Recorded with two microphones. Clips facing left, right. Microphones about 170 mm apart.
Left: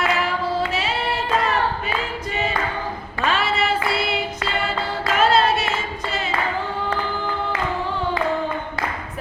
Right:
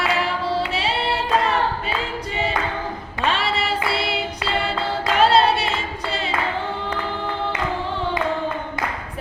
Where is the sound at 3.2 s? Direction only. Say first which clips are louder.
Left 1 dB; 30° right (ahead or behind).